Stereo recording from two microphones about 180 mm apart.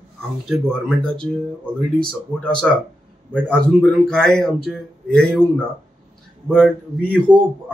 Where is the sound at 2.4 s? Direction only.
5° left (ahead or behind).